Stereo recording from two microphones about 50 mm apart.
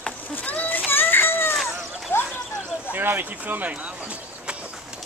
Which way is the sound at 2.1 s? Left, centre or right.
Left.